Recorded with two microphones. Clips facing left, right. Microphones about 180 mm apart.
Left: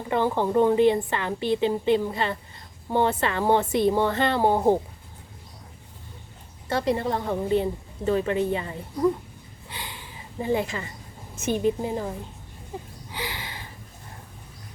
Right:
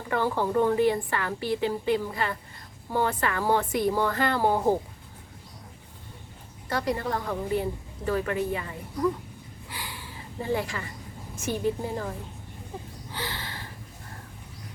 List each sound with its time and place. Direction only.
0.1 s a woman's voice: 20° left (ahead or behind)
6.7 s a woman's voice: 25° left (ahead or behind)
9.6 s sniff: 20° left (ahead or behind)
11.3 s a woman's voice: 20° left (ahead or behind)
13.1 s a sound: 15° left (ahead or behind)